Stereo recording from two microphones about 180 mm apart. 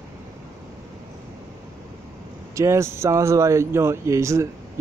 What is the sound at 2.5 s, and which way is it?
Speech, 15° right (ahead or behind).